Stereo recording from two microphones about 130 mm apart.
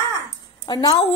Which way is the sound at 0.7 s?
35° left (ahead or behind).